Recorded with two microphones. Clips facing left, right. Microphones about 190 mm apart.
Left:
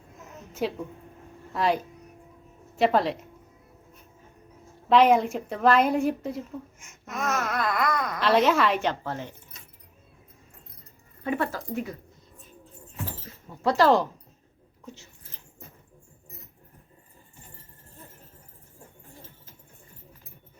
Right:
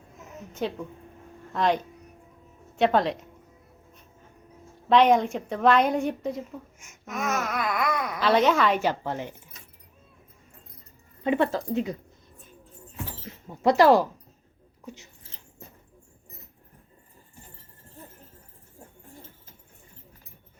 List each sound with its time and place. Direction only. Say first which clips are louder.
0.6 s speech: left 1 dB; 5° left (ahead or behind)
4.9 s speech: even; 5° left (ahead or behind)
8.9 s speech: right 2 dB; 15° right (ahead or behind)
11.2 s speech: right 4 dB; 20° right (ahead or behind)
13.6 s speech: right 3 dB; 15° right (ahead or behind)